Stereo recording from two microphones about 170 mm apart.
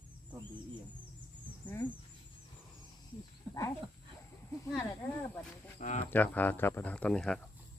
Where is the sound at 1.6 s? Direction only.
10° left (ahead or behind).